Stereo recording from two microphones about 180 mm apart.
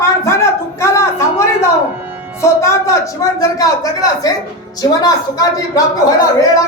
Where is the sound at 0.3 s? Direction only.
15° left (ahead or behind).